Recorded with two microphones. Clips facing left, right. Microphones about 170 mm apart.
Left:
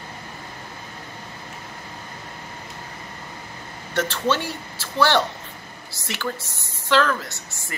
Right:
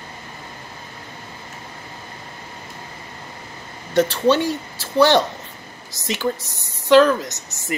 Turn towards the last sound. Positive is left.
turn(degrees=-20)  # may be behind; listen again after turning